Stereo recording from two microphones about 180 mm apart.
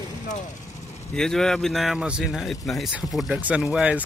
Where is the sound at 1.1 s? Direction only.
5° left (ahead or behind).